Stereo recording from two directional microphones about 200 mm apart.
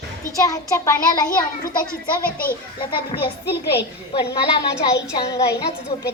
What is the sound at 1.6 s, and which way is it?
A child's voice, 45° left (ahead or behind).